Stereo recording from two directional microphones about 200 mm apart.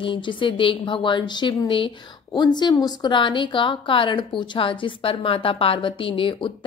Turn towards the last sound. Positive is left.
turn(degrees=25)  # may be behind; listen again after turning